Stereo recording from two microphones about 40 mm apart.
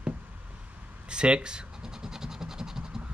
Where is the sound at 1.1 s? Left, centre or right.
Right.